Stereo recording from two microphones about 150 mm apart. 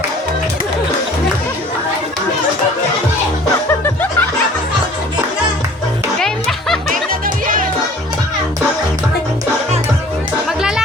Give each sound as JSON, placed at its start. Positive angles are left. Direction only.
{"t": 3.8, "sound": "music", "side_deg": 10}
{"t": 6.1, "sound": "music", "side_deg": 5}
{"t": 6.9, "sound": "music", "side_deg": -65}